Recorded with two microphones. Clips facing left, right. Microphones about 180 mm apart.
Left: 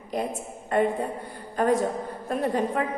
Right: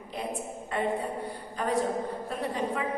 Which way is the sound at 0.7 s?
45° left (ahead or behind).